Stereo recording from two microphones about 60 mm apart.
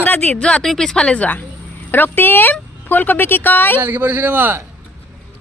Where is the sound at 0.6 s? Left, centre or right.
Centre.